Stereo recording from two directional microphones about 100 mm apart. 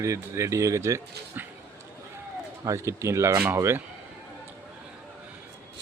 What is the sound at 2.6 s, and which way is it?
Speech, 30° right (ahead or behind).